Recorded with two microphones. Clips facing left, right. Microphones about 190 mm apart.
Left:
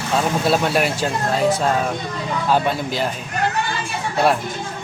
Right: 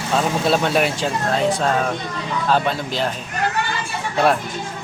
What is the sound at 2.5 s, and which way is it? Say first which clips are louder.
Speech: left 1 dB; 10° left (ahead or behind).